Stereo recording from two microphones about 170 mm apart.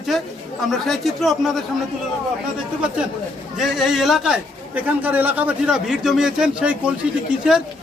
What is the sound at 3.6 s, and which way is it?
A man's voice, centre (ahead or behind).